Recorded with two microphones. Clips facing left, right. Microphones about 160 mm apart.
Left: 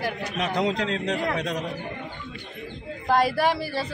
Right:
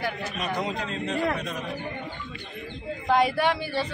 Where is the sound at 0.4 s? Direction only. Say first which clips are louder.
Left 6 dB; 90° left.